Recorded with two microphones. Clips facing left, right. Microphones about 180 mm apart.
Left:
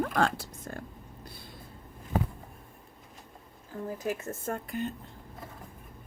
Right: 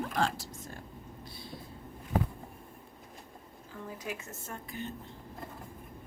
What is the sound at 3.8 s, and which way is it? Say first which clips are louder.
Speech: left 8 dB; 45° left (ahead or behind).